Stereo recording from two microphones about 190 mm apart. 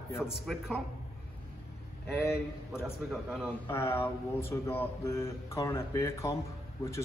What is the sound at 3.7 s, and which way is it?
Speech, 15° left (ahead or behind).